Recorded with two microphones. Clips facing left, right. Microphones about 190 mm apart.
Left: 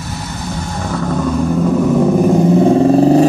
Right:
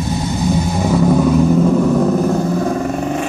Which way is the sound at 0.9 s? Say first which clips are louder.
Right 5 dB; 10° right (ahead or behind).